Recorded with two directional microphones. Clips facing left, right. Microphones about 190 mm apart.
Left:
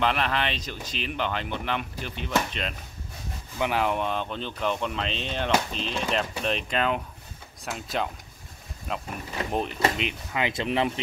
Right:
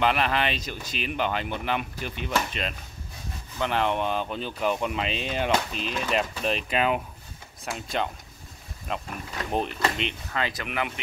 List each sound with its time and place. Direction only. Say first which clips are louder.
0.0 s speech: right 2 dB; 5° right (ahead or behind)
3.5 s speech: even; 10° left (ahead or behind)
10.4 s speech: left 5 dB; 25° left (ahead or behind)